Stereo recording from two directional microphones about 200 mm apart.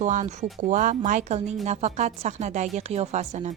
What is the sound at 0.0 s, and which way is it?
A woman's voice, 35° right (ahead or behind).